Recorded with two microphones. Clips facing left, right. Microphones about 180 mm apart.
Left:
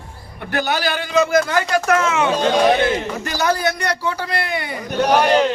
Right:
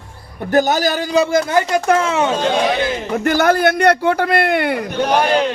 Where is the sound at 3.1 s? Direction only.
60° right (ahead or behind).